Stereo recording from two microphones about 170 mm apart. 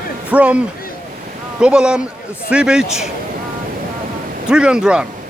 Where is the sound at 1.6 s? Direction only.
5° right (ahead or behind).